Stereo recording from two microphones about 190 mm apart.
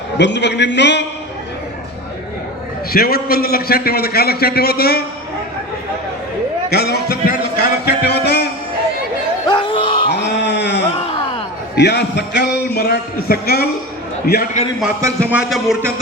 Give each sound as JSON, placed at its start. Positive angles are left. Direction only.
{"t": 0.2, "sound": "a man's voice", "side_deg": 65}
{"t": 2.9, "sound": "a man's voice", "side_deg": 55}
{"t": 6.7, "sound": "music", "side_deg": 55}
{"t": 9.5, "sound": "a sound", "side_deg": 25}
{"t": 10.1, "sound": "a sound", "side_deg": 65}
{"t": 11.8, "sound": "a man's voice", "side_deg": 65}
{"t": 15.0, "sound": "speech", "side_deg": -10}